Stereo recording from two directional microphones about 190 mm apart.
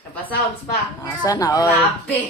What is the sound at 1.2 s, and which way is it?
Speech, 20° left (ahead or behind).